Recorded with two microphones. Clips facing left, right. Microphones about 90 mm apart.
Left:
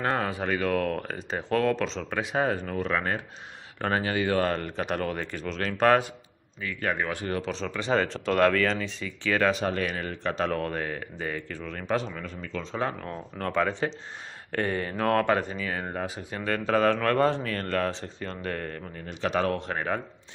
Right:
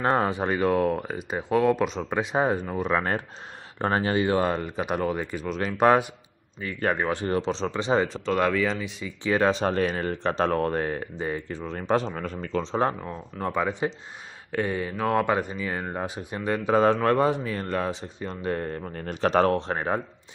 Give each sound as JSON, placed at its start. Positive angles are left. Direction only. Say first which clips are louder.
{"t": 0.0, "sound": "speech", "louder": "right 4 dB", "side_deg": -25}
{"t": 3.8, "sound": "speech", "louder": "right 3 dB", "side_deg": -30}
{"t": 4.5, "sound": "speech", "louder": "right 2 dB", "side_deg": -10}
{"t": 6.6, "sound": "speech", "louder": "right 3 dB", "side_deg": -35}
{"t": 8.1, "sound": "speech", "louder": "left 1 dB", "side_deg": -5}
{"t": 13.0, "sound": "speech", "louder": "right 2 dB", "side_deg": -15}
{"t": 18.9, "sound": "speech", "louder": "right 6 dB", "side_deg": -45}
{"t": 19.5, "sound": "speech", "louder": "right 3 dB", "side_deg": -30}